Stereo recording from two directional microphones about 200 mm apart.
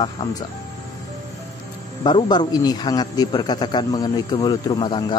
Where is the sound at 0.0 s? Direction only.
25° left (ahead or behind).